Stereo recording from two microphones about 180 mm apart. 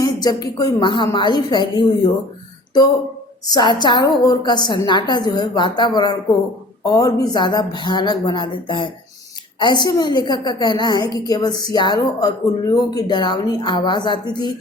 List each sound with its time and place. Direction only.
0.0 s a woman's voice: 20° left (ahead or behind)
3.5 s a woman's voice: 25° left (ahead or behind)